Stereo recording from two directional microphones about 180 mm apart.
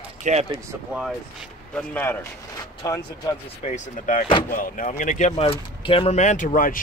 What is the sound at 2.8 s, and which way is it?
Speech, 20° left (ahead or behind).